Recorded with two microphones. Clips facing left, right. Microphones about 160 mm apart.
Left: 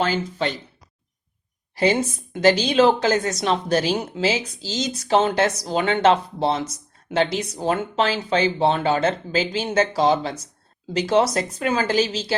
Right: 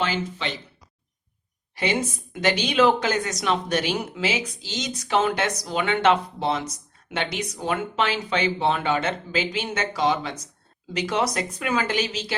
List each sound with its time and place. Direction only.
0.0 s speech: 45° left (ahead or behind)
1.7 s speech: 35° left (ahead or behind)